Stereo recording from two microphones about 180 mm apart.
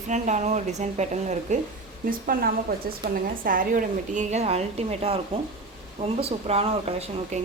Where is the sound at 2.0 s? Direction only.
55° right (ahead or behind).